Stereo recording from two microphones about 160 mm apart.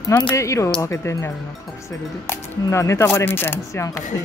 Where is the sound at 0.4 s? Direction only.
20° left (ahead or behind).